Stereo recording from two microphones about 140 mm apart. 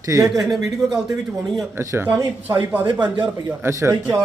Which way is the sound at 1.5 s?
20° right (ahead or behind).